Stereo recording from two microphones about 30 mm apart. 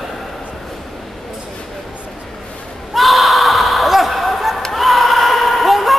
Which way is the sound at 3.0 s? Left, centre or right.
Centre.